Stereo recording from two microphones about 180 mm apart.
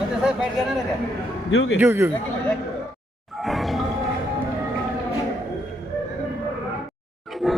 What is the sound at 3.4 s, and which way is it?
Music, centre (ahead or behind).